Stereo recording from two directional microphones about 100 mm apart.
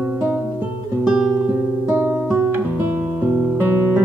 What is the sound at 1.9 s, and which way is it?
Guitar, 15° right (ahead or behind).